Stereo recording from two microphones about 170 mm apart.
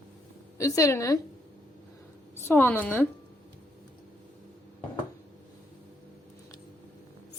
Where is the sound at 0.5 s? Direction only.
20° left (ahead or behind).